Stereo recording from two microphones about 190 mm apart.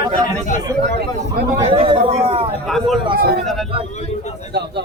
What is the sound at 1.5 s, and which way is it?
Speech, 25° right (ahead or behind).